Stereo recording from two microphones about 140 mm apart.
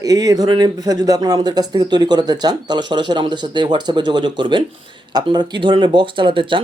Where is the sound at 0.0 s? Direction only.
25° right (ahead or behind).